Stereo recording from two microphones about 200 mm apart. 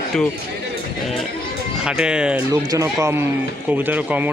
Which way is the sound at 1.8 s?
5° right (ahead or behind).